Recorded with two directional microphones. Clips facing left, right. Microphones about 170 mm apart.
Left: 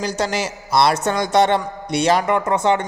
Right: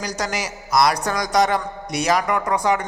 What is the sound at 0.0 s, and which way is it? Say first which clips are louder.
A man's voice: left 4 dB; 25° left (ahead or behind).